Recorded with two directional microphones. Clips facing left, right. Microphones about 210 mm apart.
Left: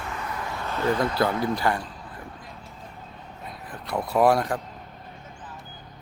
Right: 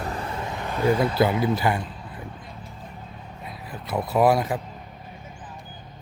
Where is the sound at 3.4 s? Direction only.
5° right (ahead or behind).